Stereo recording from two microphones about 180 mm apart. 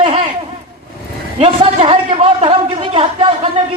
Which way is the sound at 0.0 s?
30° right (ahead or behind).